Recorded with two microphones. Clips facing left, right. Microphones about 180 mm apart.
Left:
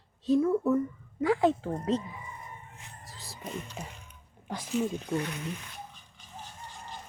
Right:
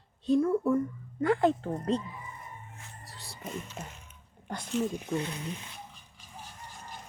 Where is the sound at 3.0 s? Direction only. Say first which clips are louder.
Left 1 dB; centre (ahead or behind).